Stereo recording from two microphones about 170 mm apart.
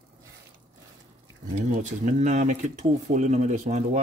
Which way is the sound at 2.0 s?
45° right (ahead or behind).